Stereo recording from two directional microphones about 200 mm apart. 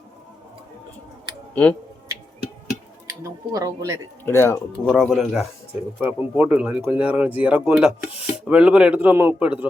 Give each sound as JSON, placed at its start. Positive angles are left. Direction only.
{"t": 3.2, "sound": "speech", "side_deg": -15}
{"t": 4.3, "sound": "speech", "side_deg": 10}
{"t": 4.9, "sound": "speech", "side_deg": 0}